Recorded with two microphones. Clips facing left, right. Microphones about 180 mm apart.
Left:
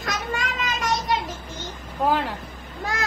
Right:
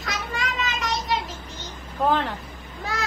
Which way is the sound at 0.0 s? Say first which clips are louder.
Left 2 dB; 45° left (ahead or behind).